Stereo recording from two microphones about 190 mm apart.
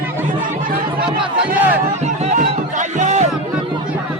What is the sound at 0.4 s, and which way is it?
Chatter, 50° right (ahead or behind).